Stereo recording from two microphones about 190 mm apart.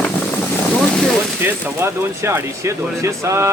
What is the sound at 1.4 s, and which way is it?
Speech, 10° right (ahead or behind).